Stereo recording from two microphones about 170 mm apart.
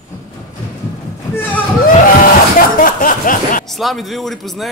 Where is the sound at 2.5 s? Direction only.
55° left (ahead or behind).